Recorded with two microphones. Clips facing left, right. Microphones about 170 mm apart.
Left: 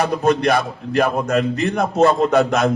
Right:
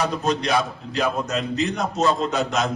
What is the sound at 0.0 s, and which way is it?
A man's voice, 55° left (ahead or behind).